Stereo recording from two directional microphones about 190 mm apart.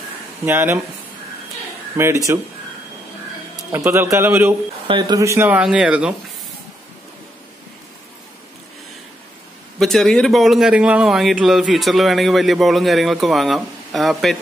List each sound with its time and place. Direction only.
0.5 s speech: 10° right (ahead or behind)
2.0 s speech: 15° right (ahead or behind)
3.7 s speech: 10° right (ahead or behind)
4.8 s speech: 25° right (ahead or behind); by 6.1 s 5° right (ahead or behind)
9.8 s a man's voice: centre (ahead or behind)